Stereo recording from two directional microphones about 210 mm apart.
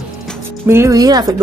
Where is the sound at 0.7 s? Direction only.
15° right (ahead or behind).